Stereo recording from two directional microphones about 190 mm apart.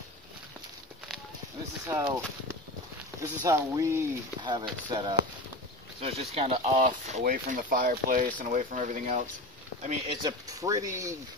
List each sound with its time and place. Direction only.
1.9 s speech: 15° right (ahead or behind); by 9.2 s 40° right (ahead or behind)
9.8 s speech: 30° right (ahead or behind)
10.5 s speech: 20° right (ahead or behind)